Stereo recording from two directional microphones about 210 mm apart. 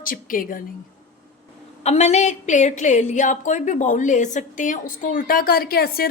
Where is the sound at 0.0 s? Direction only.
40° left (ahead or behind).